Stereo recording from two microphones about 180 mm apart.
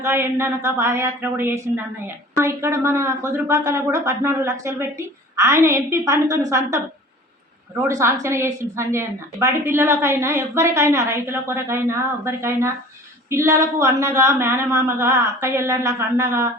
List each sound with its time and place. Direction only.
0.0 s a woman's voice: 15° right (ahead or behind)
7.9 s a woman's voice: 15° right (ahead or behind)